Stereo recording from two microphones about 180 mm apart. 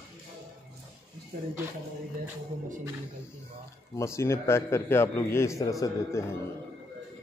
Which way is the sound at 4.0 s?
15° left (ahead or behind).